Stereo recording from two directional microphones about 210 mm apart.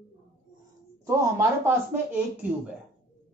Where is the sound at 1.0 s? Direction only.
10° right (ahead or behind).